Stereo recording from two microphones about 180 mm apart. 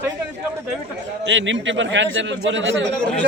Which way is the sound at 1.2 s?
90° right.